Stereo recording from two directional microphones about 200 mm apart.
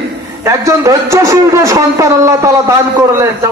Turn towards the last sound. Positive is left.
turn(degrees=-15)  # may be behind; listen again after turning